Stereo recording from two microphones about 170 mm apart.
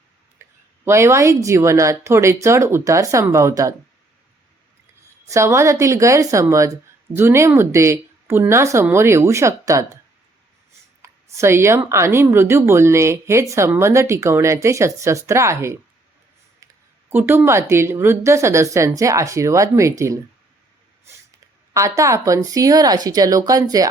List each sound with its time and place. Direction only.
0.4 s a sound: 15° right (ahead or behind)
0.9 s speech: 15° right (ahead or behind)
5.3 s speech: 15° right (ahead or behind)
11.0 s speech: 15° right (ahead or behind)
17.1 s speech: 10° right (ahead or behind)
21.7 s speech: 20° right (ahead or behind)